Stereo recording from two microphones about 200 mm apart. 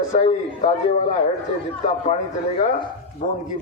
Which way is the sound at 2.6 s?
35° left (ahead or behind).